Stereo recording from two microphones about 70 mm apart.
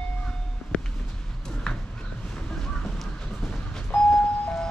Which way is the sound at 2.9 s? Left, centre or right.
Centre.